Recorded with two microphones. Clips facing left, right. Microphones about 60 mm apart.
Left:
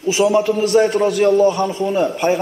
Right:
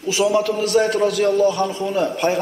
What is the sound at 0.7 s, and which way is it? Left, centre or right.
Speech, centre.